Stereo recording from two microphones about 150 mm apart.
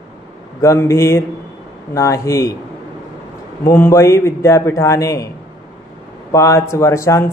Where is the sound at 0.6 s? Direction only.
20° left (ahead or behind).